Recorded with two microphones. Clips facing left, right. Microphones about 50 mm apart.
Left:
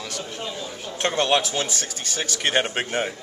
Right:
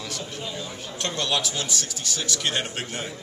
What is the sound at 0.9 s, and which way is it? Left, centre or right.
Speech, left.